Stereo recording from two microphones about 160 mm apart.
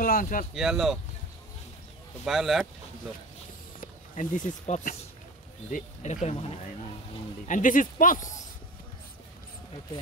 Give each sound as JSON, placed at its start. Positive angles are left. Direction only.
{"t": 0.0, "sound": "speech", "side_deg": 60}
{"t": 0.6, "sound": "speech", "side_deg": 0}
{"t": 2.2, "sound": "speech", "side_deg": 0}
{"t": 3.8, "sound": "speech", "side_deg": 55}
{"t": 6.2, "sound": "speech", "side_deg": 40}
{"t": 7.4, "sound": "speech", "side_deg": 55}